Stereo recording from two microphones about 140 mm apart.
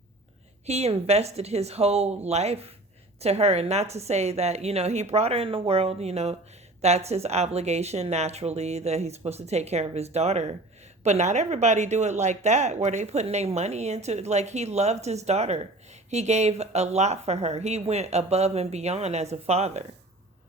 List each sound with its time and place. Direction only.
0.7 s speech: 50° right (ahead or behind)